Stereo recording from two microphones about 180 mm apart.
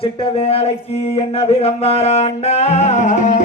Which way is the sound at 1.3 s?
35° left (ahead or behind).